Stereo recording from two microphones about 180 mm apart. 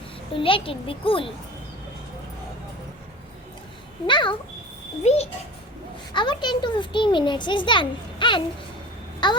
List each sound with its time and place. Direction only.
0.3 s a child's voice: 30° left (ahead or behind)
4.0 s a child's voice: 25° left (ahead or behind)
6.1 s a child's voice: 25° left (ahead or behind)